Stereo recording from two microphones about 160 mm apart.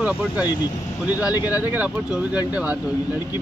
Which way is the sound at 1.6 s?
10° right (ahead or behind).